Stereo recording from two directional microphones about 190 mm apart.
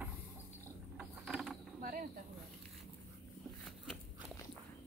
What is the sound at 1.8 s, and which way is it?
Snake, 45° right (ahead or behind).